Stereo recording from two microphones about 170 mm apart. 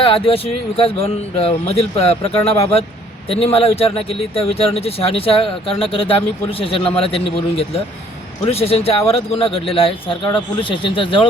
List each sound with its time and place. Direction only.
0.0 s speech: 35° left (ahead or behind)